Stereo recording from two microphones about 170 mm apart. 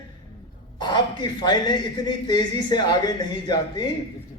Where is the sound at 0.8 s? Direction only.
25° left (ahead or behind).